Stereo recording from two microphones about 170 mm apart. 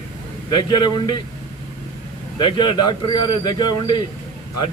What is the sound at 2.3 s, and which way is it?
A man's voice, 25° left (ahead or behind).